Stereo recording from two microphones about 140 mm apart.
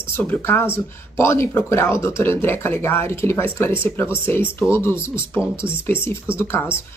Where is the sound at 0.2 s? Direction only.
15° left (ahead or behind).